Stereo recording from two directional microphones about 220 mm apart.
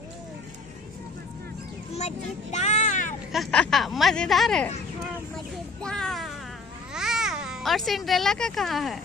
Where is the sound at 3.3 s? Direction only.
Centre (ahead or behind).